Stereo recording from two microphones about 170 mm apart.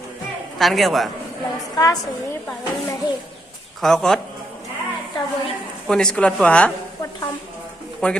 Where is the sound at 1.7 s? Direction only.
20° left (ahead or behind).